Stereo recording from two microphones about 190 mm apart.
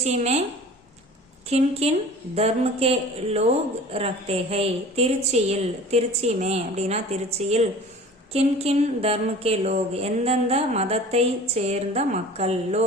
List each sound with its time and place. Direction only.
0.0 s speech: 35° right (ahead or behind)
1.5 s speech: 35° right (ahead or behind)